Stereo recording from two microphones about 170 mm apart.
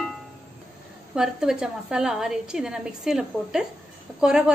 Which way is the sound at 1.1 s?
5° right (ahead or behind).